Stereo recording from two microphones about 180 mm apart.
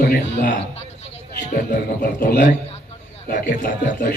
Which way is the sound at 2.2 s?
50° left (ahead or behind).